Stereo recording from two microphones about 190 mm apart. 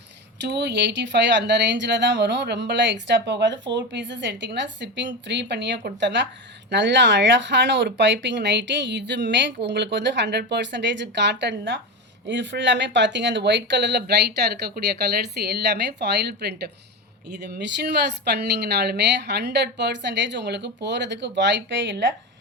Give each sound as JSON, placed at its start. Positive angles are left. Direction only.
{"t": 0.4, "sound": "speech", "side_deg": -60}